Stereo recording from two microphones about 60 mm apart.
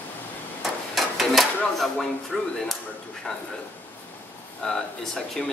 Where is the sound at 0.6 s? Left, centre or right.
Centre.